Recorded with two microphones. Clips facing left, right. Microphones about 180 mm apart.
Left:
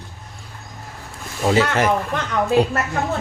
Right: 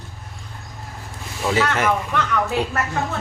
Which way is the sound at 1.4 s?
30° left (ahead or behind).